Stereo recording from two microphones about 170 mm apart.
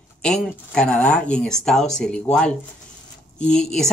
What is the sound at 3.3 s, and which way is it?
Speech, 5° left (ahead or behind).